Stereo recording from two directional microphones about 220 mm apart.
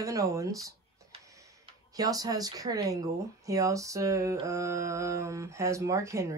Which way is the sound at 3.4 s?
15° right (ahead or behind).